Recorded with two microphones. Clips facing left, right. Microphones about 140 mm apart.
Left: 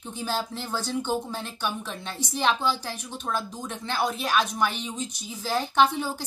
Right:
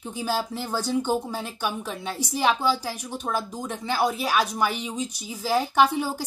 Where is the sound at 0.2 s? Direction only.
10° right (ahead or behind).